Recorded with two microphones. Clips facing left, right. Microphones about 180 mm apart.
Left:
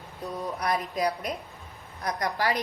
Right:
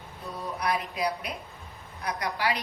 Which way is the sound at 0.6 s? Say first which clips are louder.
Left 1 dB; 40° left (ahead or behind).